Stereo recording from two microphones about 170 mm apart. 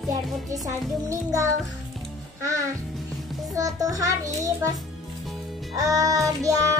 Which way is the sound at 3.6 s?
20° right (ahead or behind).